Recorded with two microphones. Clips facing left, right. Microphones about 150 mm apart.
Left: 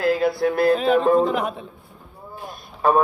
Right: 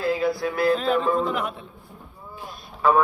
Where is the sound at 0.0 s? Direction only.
80° left.